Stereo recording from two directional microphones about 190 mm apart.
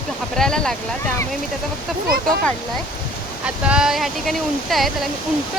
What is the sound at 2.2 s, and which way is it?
Speech, 5° left (ahead or behind).